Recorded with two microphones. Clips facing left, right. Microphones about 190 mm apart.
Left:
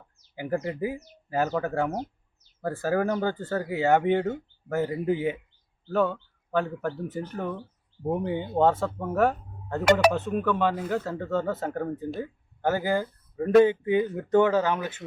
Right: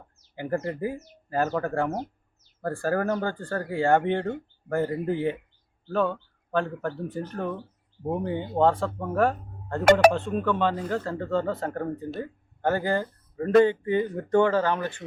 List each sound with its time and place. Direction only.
0.3 s speech: 5° left (ahead or behind)
6.5 s speech: 5° left (ahead or behind)